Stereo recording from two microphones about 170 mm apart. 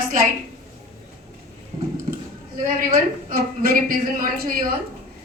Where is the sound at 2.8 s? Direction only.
60° right (ahead or behind).